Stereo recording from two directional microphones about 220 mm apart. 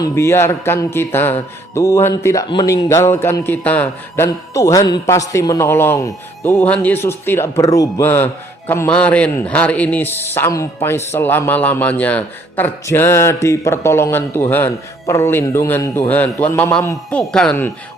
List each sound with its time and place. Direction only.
0.0 s speech: 10° left (ahead or behind)